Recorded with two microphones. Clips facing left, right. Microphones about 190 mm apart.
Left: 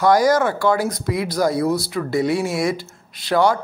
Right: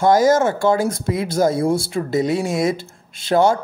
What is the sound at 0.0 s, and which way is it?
Speech, 25° right (ahead or behind).